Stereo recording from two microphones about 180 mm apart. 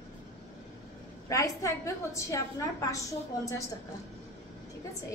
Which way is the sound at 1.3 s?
15° left (ahead or behind).